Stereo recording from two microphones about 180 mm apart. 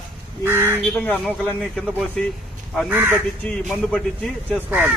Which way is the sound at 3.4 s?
10° left (ahead or behind).